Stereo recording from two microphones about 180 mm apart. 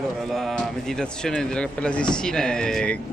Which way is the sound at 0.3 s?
Centre (ahead or behind).